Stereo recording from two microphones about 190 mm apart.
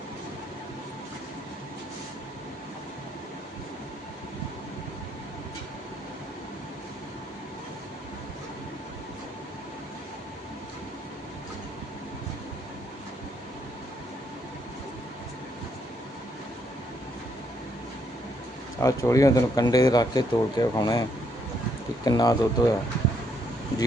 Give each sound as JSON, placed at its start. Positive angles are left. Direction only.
{"t": 18.8, "sound": "speech", "side_deg": 15}
{"t": 22.0, "sound": "speech", "side_deg": 20}